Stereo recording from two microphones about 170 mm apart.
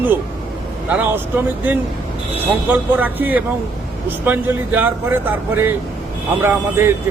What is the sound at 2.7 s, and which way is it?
Speech, 10° right (ahead or behind).